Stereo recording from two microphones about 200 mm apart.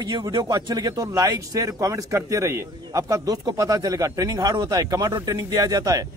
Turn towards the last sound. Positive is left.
turn(degrees=-20)  # may be behind; listen again after turning